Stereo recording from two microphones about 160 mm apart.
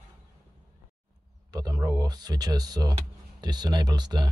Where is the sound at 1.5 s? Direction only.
25° right (ahead or behind).